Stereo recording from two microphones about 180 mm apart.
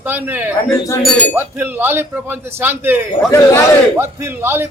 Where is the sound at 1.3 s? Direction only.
10° right (ahead or behind).